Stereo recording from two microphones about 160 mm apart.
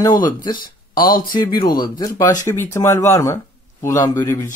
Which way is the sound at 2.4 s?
15° left (ahead or behind).